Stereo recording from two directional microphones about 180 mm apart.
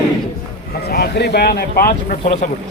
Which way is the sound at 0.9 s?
65° left (ahead or behind).